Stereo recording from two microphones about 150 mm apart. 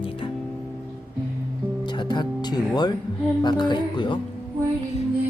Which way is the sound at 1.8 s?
30° left (ahead or behind).